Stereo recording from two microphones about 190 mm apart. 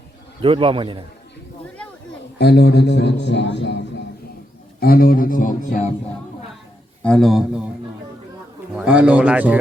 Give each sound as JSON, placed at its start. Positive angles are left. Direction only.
{"t": 0.4, "sound": "a man's voice", "side_deg": -30}
{"t": 2.4, "sound": "a man's voice", "side_deg": 60}
{"t": 4.8, "sound": "speech", "side_deg": 50}
{"t": 7.0, "sound": "a man's voice", "side_deg": 5}
{"t": 8.7, "sound": "a man's voice", "side_deg": -5}